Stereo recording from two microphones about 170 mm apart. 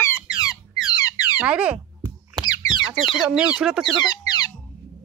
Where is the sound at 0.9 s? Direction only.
20° left (ahead or behind).